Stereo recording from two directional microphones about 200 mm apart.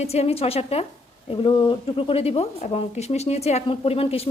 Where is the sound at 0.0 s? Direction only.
30° left (ahead or behind).